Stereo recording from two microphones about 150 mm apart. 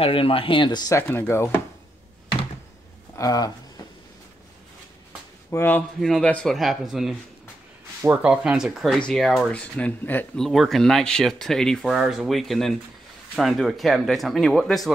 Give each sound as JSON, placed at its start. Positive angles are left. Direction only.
{"t": 0.0, "sound": "speech", "side_deg": 35}
{"t": 3.2, "sound": "a sound", "side_deg": 25}
{"t": 5.5, "sound": "speech", "side_deg": 15}
{"t": 5.9, "sound": "speech", "side_deg": 0}